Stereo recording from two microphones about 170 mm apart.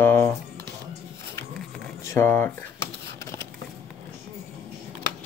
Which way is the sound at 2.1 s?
10° left (ahead or behind).